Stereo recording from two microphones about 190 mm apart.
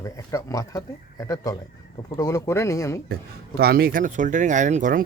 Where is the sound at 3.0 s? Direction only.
55° right (ahead or behind).